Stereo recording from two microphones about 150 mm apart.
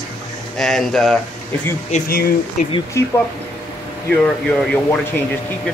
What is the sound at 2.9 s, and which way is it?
Speech, 20° left (ahead or behind).